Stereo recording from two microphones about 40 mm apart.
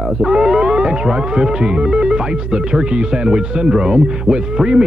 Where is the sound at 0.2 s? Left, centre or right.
Centre.